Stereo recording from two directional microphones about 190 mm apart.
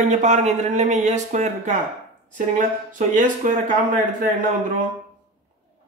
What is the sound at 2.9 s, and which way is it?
Speech, 45° right (ahead or behind).